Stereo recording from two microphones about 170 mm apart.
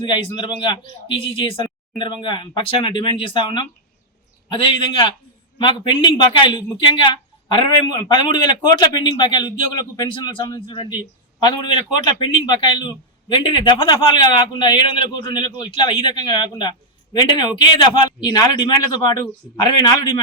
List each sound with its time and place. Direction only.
0.0 s a man's voice: 30° left (ahead or behind)